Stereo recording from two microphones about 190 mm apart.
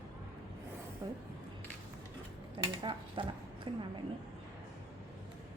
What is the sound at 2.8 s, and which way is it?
Speech, 25° right (ahead or behind).